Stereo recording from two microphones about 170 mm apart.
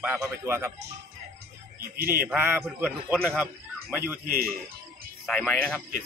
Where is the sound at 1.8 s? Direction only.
60° right (ahead or behind).